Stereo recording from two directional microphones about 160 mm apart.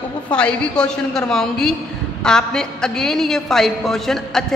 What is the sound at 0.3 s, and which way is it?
A man's voice, 5° left (ahead or behind).